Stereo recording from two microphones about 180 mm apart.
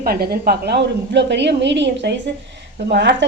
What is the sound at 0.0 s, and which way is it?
A woman's voice, 60° right (ahead or behind).